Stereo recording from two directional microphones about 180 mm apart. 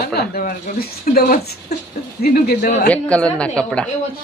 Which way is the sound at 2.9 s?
5° left (ahead or behind).